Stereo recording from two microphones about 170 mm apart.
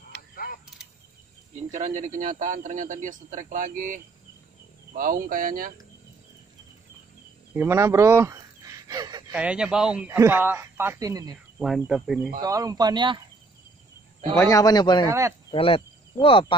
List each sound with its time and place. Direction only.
0.1 s mechanisms: 60° left (ahead or behind)
1.7 s a man's voice: 45° right (ahead or behind)
7.5 s a sound: 15° right (ahead or behind)
9.3 s speech: 5° right (ahead or behind)
11.5 s speech: centre (ahead or behind)
12.4 s speech: 20° right (ahead or behind)
14.3 s a man's voice: 20° left (ahead or behind)
15.0 s speech: 15° right (ahead or behind)
15.5 s speech: 30° left (ahead or behind)